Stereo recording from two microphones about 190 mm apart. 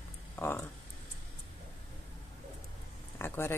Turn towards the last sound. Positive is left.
turn(degrees=10)  # may be behind; listen again after turning